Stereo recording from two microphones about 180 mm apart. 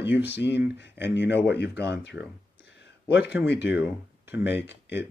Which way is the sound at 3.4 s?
75° left (ahead or behind).